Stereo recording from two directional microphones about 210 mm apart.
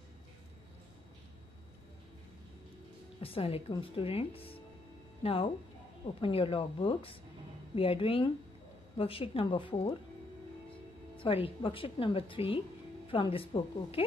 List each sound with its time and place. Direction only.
3.2 s speech: 25° left (ahead or behind)
11.1 s speech: 25° left (ahead or behind)